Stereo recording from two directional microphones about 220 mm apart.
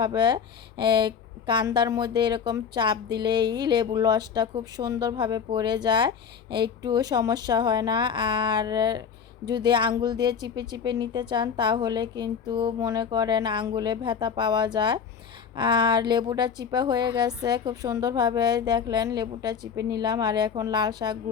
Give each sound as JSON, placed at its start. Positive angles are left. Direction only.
{"t": 0.0, "sound": "a woman's voice", "side_deg": -20}